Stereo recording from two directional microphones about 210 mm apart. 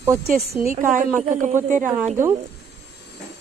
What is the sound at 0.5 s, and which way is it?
Speech, 15° right (ahead or behind).